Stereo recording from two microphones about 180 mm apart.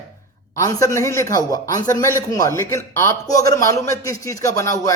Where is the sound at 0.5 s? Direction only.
15° left (ahead or behind).